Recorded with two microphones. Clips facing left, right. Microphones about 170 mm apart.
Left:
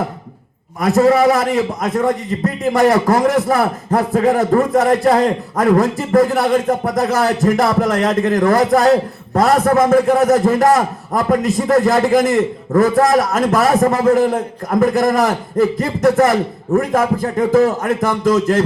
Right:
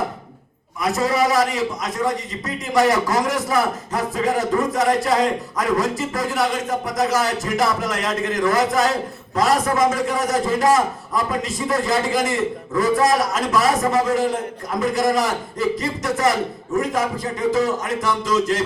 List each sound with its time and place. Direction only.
0.8 s a man's voice: 60° left (ahead or behind)